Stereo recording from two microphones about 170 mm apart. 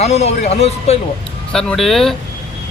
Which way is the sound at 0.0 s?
40° left (ahead or behind).